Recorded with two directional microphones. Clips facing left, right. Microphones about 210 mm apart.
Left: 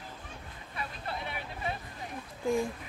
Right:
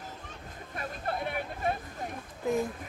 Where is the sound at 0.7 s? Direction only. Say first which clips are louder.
Right 4 dB; 50° right (ahead or behind).